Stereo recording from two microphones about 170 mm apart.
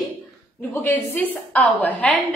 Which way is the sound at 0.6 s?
10° left (ahead or behind).